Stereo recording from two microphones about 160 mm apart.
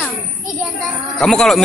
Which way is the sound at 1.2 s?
5° left (ahead or behind).